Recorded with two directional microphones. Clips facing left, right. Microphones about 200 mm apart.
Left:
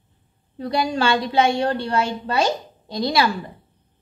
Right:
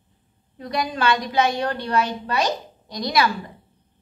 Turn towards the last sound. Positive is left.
turn(degrees=30)  # may be behind; listen again after turning